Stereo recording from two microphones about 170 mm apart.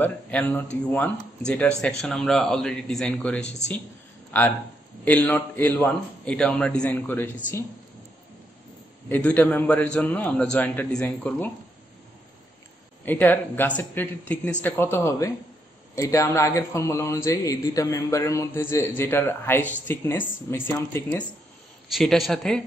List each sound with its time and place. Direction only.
0.0 s a man's voice: 10° left (ahead or behind)
9.1 s speech: 10° left (ahead or behind)
13.0 s speech: 10° left (ahead or behind)
21.9 s a man's voice: centre (ahead or behind)